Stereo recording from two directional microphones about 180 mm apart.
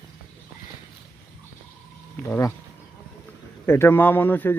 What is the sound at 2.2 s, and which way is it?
Speech, 15° left (ahead or behind).